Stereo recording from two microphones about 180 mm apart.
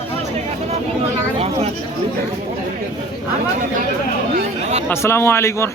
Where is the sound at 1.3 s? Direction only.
35° right (ahead or behind).